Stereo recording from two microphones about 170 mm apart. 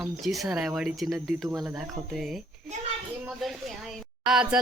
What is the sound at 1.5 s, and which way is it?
Speech, 20° right (ahead or behind).